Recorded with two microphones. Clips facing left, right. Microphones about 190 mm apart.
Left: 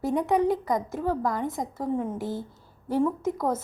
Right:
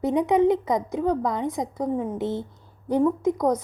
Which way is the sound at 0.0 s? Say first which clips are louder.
Right 4 dB; 20° right (ahead or behind).